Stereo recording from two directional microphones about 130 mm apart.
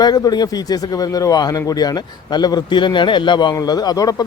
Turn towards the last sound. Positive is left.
turn(degrees=30)  # may be behind; listen again after turning